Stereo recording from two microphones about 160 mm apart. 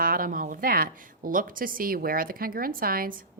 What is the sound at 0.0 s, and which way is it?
A woman's voice, 60° right (ahead or behind).